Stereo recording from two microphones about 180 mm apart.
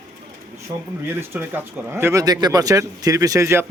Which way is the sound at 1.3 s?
10° right (ahead or behind).